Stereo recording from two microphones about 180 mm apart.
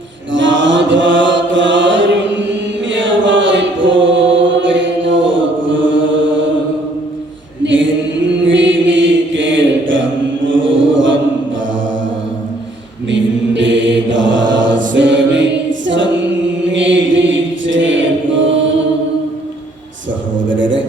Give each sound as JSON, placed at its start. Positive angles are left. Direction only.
{"t": 0.3, "sound": "mantra", "side_deg": -90}
{"t": 3.0, "sound": "chant", "side_deg": -90}
{"t": 7.6, "sound": "a sound", "side_deg": -90}
{"t": 8.4, "sound": "chant", "side_deg": -90}
{"t": 13.1, "sound": "mantra", "side_deg": -85}
{"t": 16.7, "sound": "chant", "side_deg": -90}
{"t": 20.5, "sound": "a sound", "side_deg": -90}